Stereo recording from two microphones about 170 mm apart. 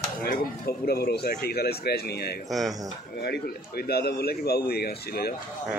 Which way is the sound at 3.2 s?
70° left (ahead or behind).